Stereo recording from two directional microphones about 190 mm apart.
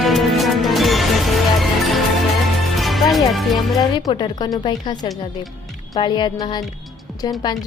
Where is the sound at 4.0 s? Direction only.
20° left (ahead or behind).